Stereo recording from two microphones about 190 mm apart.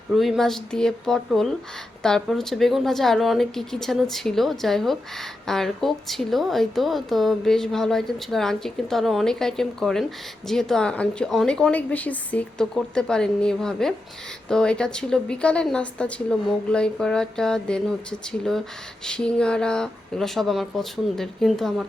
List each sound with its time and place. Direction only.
0.1 s a woman's voice: centre (ahead or behind)